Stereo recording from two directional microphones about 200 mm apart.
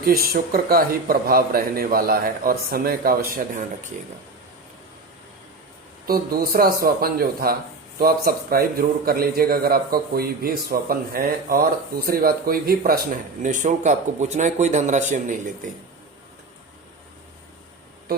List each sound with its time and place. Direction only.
0.0 s a man's voice: 50° right (ahead or behind)
6.1 s a man's voice: 50° right (ahead or behind)